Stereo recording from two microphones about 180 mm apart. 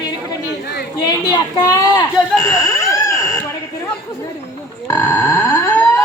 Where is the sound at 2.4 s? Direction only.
15° left (ahead or behind).